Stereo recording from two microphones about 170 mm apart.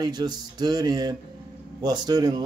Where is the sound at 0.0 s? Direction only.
25° right (ahead or behind).